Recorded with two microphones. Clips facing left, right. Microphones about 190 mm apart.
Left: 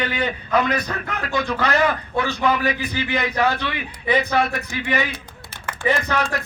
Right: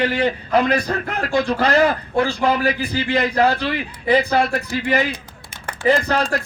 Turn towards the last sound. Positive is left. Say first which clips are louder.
# right 4 dB
turn(degrees=-30)  # may be behind; listen again after turning